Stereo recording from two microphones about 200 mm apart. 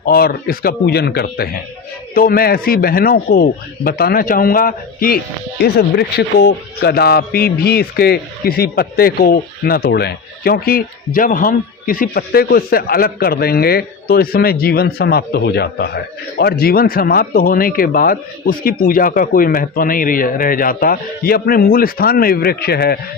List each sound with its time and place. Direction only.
0.0 s a man's voice: 50° left (ahead or behind)